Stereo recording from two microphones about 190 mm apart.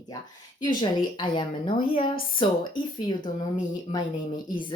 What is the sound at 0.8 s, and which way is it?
Speech, 25° left (ahead or behind).